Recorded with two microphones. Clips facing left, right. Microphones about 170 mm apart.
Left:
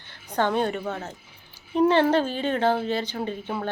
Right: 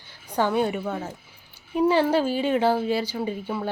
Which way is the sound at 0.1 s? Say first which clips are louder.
Right 1 dB; 10° right (ahead or behind).